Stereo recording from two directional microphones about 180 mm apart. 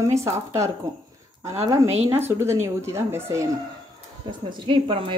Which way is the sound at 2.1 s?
15° right (ahead or behind).